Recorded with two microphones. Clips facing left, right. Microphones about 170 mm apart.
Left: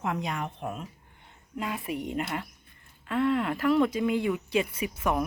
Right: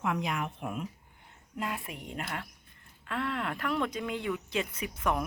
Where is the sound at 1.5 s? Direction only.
Centre (ahead or behind).